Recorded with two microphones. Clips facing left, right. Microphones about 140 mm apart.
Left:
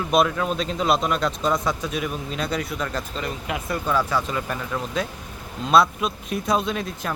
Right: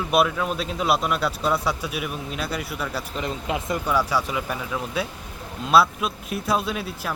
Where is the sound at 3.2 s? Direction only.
25° right (ahead or behind).